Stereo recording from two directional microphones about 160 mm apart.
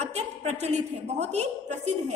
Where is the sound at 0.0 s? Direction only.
45° right (ahead or behind).